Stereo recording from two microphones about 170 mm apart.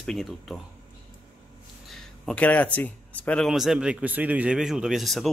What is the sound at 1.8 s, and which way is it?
Speech, 5° left (ahead or behind).